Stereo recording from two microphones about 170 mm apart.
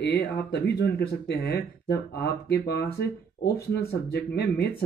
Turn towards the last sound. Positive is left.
turn(degrees=70)  # may be behind; listen again after turning